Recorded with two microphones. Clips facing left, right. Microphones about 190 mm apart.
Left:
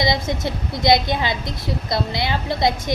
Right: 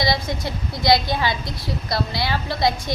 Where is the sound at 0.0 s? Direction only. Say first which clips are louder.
Left 2 dB; 20° left (ahead or behind).